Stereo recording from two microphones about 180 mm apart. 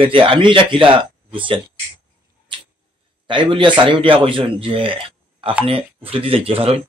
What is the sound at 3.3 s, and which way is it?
A man's voice, 25° right (ahead or behind).